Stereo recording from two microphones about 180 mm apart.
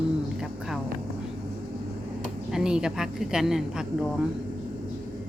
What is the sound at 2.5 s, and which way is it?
Speech, 5° right (ahead or behind).